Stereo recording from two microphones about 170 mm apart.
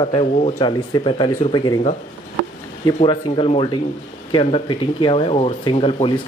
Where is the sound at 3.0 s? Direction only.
30° left (ahead or behind).